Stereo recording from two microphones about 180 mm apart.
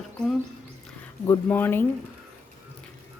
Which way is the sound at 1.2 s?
15° left (ahead or behind).